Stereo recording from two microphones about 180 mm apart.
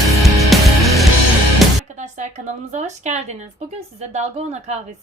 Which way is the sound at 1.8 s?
40° right (ahead or behind).